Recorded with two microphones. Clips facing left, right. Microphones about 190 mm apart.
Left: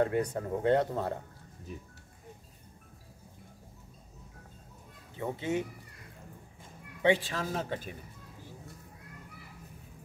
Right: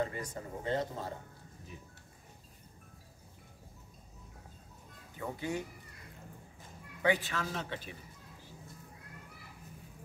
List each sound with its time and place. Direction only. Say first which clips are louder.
0.0 s speech: left 8 dB; 60° left (ahead or behind)
5.1 s a child's voice: left 5 dB; 25° left (ahead or behind)
7.0 s a woman's voice: left 4 dB; 30° left (ahead or behind)
7.4 s a woman's voice: left 5 dB; 45° left (ahead or behind)